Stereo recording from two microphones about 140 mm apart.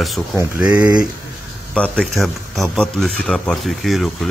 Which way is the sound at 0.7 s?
30° right (ahead or behind).